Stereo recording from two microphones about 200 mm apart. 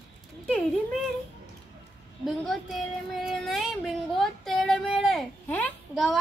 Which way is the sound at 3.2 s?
Centre (ahead or behind).